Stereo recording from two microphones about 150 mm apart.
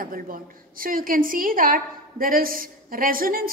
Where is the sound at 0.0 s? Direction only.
70° right (ahead or behind).